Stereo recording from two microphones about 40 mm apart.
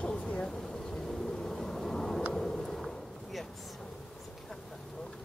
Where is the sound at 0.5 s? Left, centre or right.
Centre.